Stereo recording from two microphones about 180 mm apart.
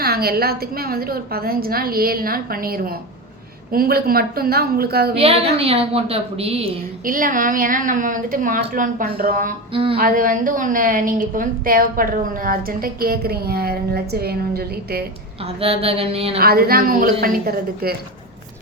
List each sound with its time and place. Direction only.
0.0 s a woman's voice: 60° right (ahead or behind)
5.1 s a woman's voice: 35° right (ahead or behind)
7.0 s a woman's voice: 50° right (ahead or behind)
9.7 s a woman's voice: 30° right (ahead or behind)
10.0 s a woman's voice: 50° right (ahead or behind)
15.4 s a woman's voice: 35° right (ahead or behind)
16.4 s a woman's voice: 55° right (ahead or behind)